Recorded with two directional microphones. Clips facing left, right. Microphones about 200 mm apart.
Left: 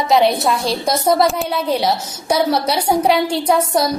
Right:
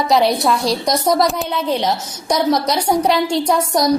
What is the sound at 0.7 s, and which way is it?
A woman's voice, 5° left (ahead or behind).